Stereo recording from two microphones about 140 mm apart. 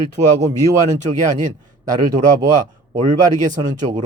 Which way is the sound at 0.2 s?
55° right (ahead or behind).